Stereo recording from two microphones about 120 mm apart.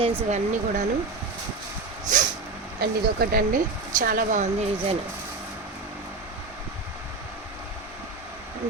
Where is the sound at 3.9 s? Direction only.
90° right.